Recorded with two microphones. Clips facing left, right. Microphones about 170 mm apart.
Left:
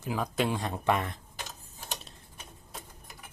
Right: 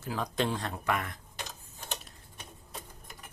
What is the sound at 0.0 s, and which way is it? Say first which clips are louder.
Speech: left 2 dB; 10° left (ahead or behind).